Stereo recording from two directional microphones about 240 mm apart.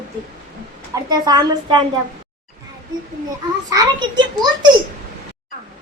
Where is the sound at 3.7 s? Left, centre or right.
Centre.